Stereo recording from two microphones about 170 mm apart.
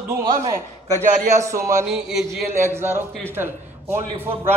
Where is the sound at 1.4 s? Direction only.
15° right (ahead or behind).